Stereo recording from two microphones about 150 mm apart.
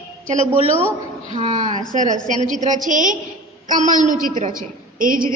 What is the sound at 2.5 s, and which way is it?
A woman's voice, 55° right (ahead or behind).